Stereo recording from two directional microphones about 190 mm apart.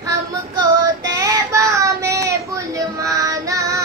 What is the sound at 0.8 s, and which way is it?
Child singing, 20° right (ahead or behind).